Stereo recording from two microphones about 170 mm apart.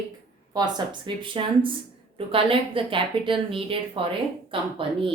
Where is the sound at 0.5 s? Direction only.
25° right (ahead or behind).